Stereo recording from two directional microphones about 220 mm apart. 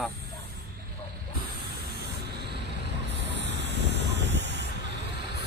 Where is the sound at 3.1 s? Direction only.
50° right (ahead or behind).